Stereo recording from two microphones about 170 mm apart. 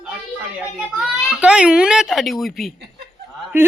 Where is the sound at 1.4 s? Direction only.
5° right (ahead or behind).